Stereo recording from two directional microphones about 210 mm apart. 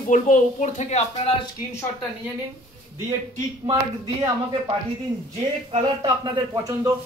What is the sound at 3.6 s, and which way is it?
Speech, 20° right (ahead or behind).